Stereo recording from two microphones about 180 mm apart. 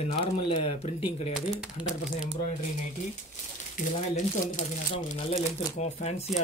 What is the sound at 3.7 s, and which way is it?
Speech, 45° left (ahead or behind).